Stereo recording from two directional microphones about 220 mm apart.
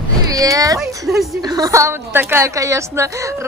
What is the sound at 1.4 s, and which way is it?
A woman's voice, 15° right (ahead or behind).